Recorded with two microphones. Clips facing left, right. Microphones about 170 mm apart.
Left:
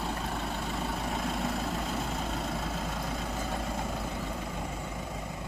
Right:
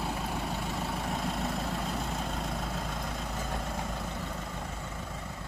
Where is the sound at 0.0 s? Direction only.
5° right (ahead or behind).